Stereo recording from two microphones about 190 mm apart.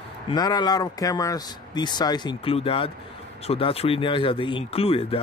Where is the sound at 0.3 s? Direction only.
20° left (ahead or behind).